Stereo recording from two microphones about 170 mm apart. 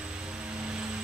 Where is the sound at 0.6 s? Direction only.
5° right (ahead or behind).